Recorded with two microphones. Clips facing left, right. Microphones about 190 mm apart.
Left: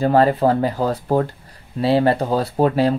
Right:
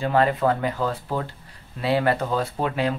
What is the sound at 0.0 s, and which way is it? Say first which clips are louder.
Speech: left 5 dB; 35° left (ahead or behind).